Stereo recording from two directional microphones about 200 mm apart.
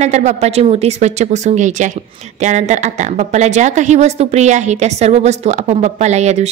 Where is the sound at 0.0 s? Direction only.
35° right (ahead or behind).